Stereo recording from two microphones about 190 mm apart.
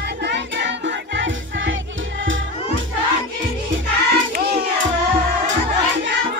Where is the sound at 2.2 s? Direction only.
85° right.